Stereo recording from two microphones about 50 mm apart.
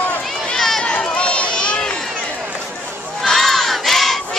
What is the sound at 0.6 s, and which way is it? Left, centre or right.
Run, centre.